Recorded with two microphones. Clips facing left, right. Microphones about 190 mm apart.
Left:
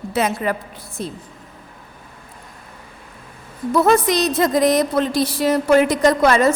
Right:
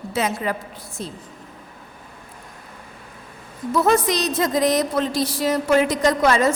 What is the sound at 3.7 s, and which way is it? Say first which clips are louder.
A woman's voice: left 3 dB; 60° left (ahead or behind).